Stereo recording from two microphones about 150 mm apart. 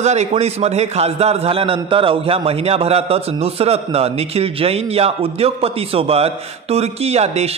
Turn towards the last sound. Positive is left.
turn(degrees=-45)  # may be behind; listen again after turning